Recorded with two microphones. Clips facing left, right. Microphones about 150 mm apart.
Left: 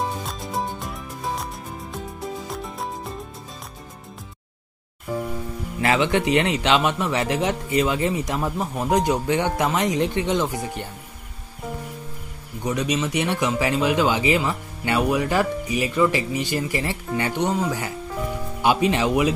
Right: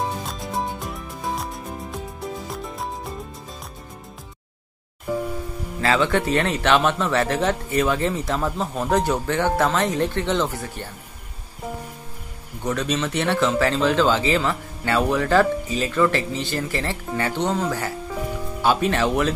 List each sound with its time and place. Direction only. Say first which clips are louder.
0.2 s music: right 1 dB; centre (ahead or behind)
5.8 s speech: even; 20° left (ahead or behind)
12.6 s speech: even; 10° left (ahead or behind)